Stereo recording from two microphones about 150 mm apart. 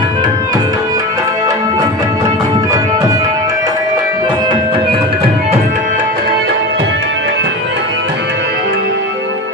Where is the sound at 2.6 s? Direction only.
25° right (ahead or behind).